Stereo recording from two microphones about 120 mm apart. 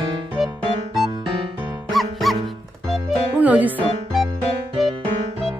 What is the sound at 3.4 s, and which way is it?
Music, 15° right (ahead or behind).